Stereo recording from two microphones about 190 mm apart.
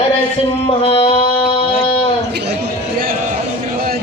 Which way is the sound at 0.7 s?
30° left (ahead or behind).